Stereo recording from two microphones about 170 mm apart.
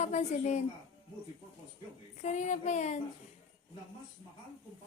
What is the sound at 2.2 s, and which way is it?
Speech, 45° left (ahead or behind).